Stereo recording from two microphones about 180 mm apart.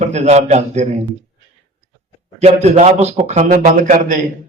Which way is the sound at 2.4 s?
35° right (ahead or behind).